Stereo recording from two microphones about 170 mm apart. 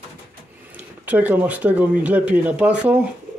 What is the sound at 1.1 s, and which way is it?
Speech, 10° right (ahead or behind).